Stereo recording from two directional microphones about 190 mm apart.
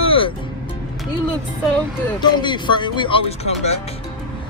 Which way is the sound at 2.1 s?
25° left (ahead or behind).